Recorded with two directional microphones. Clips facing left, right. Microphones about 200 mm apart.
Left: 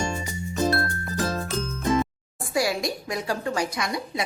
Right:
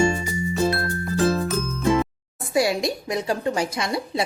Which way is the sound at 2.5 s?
25° right (ahead or behind).